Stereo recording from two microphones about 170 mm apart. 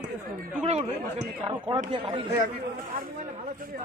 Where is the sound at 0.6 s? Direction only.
40° right (ahead or behind).